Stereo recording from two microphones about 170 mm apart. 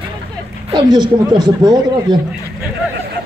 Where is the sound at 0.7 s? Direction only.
25° right (ahead or behind).